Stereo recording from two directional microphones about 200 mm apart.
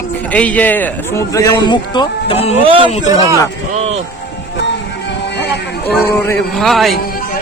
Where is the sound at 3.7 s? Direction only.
30° right (ahead or behind).